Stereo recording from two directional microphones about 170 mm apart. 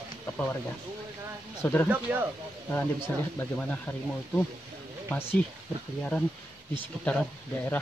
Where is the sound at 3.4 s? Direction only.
10° left (ahead or behind).